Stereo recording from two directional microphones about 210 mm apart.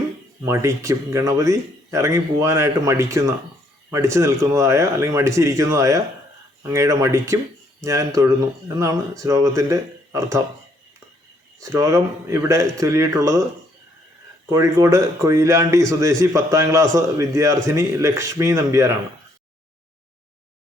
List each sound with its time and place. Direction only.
0.4 s a man's voice: 15° right (ahead or behind)
11.6 s a man's voice: 15° right (ahead or behind)
14.5 s a man's voice: 15° right (ahead or behind)